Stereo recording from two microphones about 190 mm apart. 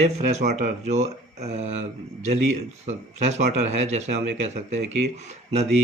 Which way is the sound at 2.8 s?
35° right (ahead or behind).